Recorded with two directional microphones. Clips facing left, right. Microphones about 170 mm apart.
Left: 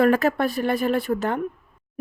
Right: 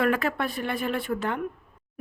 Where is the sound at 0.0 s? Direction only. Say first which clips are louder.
Left 6 dB; 40° left (ahead or behind).